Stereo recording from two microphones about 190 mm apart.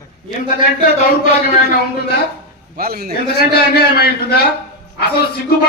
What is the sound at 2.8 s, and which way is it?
Speech, 55° right (ahead or behind).